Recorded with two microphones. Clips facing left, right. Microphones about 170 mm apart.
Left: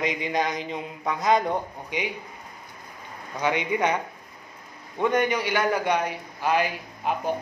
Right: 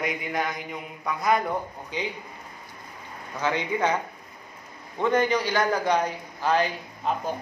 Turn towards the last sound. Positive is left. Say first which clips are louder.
# even
turn(degrees=10)  # may be behind; listen again after turning